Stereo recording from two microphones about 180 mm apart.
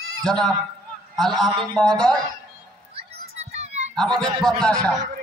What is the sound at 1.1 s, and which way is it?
A man's voice, centre (ahead or behind).